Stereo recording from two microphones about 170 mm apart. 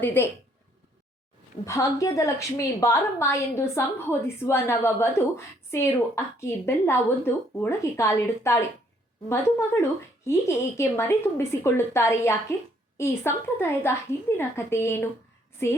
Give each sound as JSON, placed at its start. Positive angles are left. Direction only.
{"t": 0.0, "sound": "a woman's voice", "side_deg": 10}
{"t": 1.6, "sound": "a woman's voice", "side_deg": 20}
{"t": 10.2, "sound": "a woman's voice", "side_deg": 15}